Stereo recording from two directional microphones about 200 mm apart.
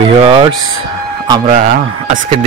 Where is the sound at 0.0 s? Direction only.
25° right (ahead or behind).